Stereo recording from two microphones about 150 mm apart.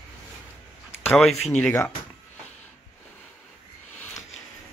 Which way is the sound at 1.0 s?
Centre (ahead or behind).